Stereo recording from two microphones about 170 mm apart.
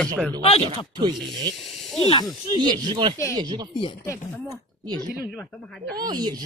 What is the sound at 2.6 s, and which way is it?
Speech, 25° right (ahead or behind).